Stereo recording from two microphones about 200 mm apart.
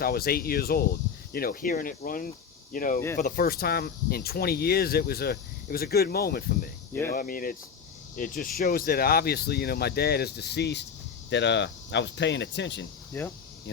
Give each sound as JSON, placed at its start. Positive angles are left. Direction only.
{"t": 0.0, "sound": "speech", "side_deg": 50}
{"t": 13.1, "sound": "speech", "side_deg": 15}